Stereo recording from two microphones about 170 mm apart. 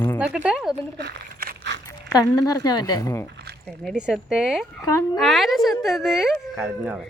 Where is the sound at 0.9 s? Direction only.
85° right.